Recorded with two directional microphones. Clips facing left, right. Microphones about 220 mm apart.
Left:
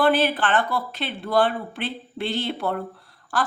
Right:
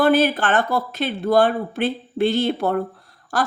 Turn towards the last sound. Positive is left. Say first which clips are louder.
# right 3 dB
turn(degrees=-40)  # may be behind; listen again after turning